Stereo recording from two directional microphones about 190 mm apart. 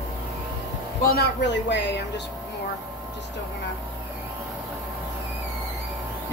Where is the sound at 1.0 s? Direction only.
60° left (ahead or behind).